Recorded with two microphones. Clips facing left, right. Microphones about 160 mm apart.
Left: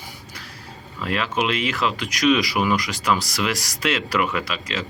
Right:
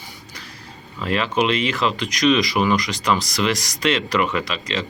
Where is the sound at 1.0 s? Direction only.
Centre (ahead or behind).